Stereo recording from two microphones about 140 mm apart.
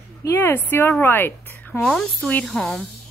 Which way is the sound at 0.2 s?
15° left (ahead or behind).